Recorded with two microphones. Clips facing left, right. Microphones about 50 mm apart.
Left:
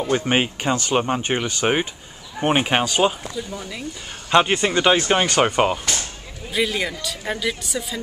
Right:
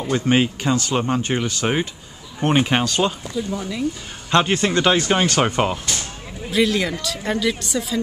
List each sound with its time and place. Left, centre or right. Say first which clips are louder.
0.1 s speech: right 3 dB; centre
3.3 s a woman's voice: right 5 dB; centre